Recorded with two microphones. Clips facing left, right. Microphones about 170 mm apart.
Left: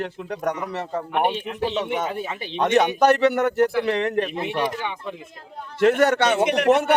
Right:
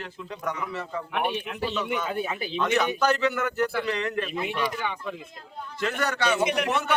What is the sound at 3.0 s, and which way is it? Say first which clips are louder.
A man's voice: left 7 dB; 60° left (ahead or behind).